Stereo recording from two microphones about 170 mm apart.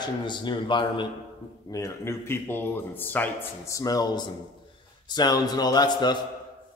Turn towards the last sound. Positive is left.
turn(degrees=25)  # may be behind; listen again after turning